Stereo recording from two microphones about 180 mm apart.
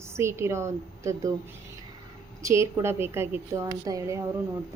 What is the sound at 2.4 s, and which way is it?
A woman's voice, 15° right (ahead or behind).